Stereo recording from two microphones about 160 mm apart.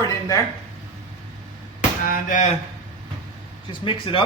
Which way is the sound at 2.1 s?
50° left (ahead or behind).